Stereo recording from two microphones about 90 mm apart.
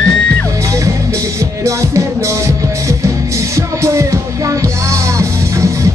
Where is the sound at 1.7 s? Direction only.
35° right (ahead or behind).